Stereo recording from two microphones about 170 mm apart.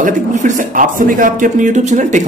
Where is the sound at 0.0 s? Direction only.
45° right (ahead or behind).